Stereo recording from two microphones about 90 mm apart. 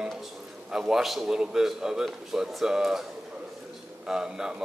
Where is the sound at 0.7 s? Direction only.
5° right (ahead or behind).